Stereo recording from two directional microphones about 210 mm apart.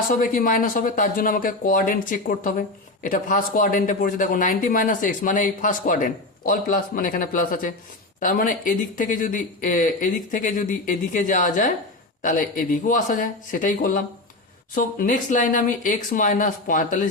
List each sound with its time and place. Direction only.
0.1 s speech: 40° left (ahead or behind)